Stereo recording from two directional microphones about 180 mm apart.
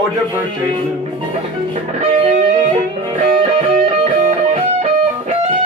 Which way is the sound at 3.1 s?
35° right (ahead or behind).